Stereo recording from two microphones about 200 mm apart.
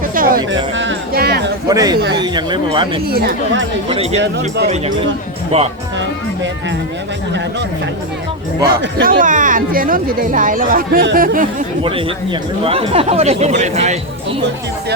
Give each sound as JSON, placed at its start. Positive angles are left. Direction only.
{"t": 0.1, "sound": "music", "side_deg": -45}
{"t": 0.5, "sound": "music", "side_deg": -65}
{"t": 1.6, "sound": "speech", "side_deg": -20}
{"t": 3.1, "sound": "speech", "side_deg": -50}
{"t": 3.8, "sound": "speech", "side_deg": -30}
{"t": 6.0, "sound": "music", "side_deg": -65}
{"t": 8.7, "sound": "speech", "side_deg": -50}
{"t": 11.8, "sound": "speech", "side_deg": -25}